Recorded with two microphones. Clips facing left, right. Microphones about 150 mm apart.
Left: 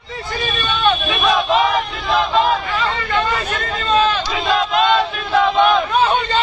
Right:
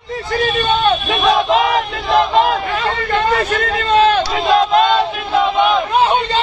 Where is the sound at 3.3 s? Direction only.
65° right (ahead or behind).